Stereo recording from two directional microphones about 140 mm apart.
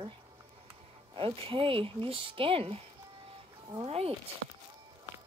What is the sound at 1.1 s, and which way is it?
Speech, 40° right (ahead or behind).